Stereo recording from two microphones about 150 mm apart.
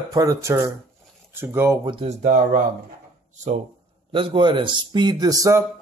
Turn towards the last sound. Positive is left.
turn(degrees=-20)  # may be behind; listen again after turning